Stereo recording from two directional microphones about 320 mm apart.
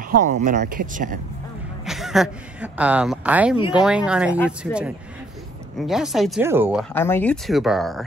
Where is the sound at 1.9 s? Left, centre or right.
Centre.